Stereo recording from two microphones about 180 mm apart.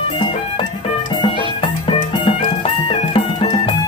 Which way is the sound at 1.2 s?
25° left (ahead or behind).